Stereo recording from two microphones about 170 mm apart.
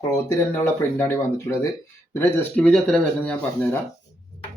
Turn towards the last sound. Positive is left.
turn(degrees=5)  # may be behind; listen again after turning